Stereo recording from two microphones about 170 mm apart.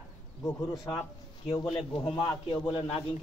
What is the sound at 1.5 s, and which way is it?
A man's voice, 25° left (ahead or behind).